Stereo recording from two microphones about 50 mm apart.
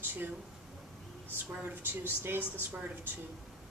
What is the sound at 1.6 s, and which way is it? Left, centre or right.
Speech, right.